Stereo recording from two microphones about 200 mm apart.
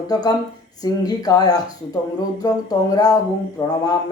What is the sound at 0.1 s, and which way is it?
Music, 20° left (ahead or behind).